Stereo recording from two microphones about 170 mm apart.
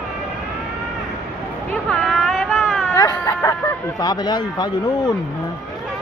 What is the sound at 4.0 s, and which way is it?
Speech, 25° left (ahead or behind).